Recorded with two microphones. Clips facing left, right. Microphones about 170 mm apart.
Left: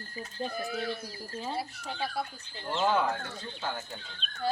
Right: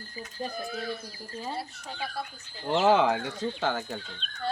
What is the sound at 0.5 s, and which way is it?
Speech, centre (ahead or behind).